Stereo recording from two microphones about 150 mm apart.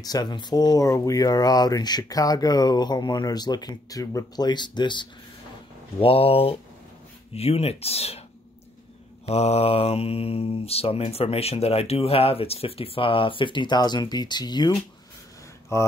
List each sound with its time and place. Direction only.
0.0 s speech: 25° left (ahead or behind)
5.9 s mantra: 40° left (ahead or behind)
7.3 s speech: 40° left (ahead or behind)
9.2 s mantra: 45° left (ahead or behind); by 14.7 s 30° left (ahead or behind)
15.7 s speech: 20° left (ahead or behind)